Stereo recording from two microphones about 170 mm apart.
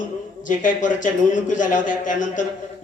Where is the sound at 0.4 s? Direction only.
50° left (ahead or behind).